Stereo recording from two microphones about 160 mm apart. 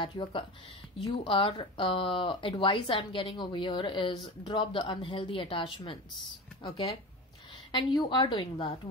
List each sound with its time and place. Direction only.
0.0 s speech: 30° left (ahead or behind)